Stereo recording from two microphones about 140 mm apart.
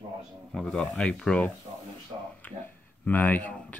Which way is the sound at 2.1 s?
40° right (ahead or behind).